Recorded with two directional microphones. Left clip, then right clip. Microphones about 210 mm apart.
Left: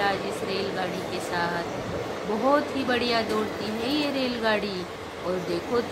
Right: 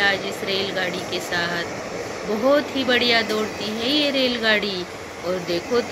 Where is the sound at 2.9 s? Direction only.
Centre (ahead or behind).